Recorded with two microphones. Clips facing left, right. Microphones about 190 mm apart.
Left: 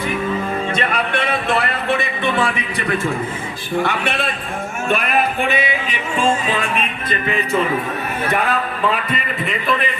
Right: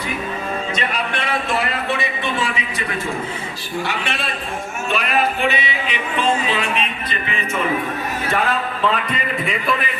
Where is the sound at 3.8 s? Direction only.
55° left (ahead or behind).